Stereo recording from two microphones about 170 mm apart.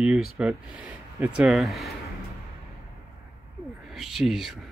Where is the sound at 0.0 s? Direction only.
5° right (ahead or behind).